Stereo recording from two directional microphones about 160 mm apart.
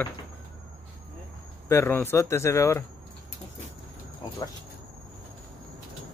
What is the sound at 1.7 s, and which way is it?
Speech, 15° left (ahead or behind).